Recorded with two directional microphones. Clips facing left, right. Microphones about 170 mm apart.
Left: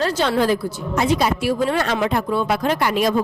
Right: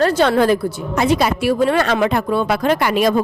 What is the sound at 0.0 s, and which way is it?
A woman's voice, 55° right (ahead or behind).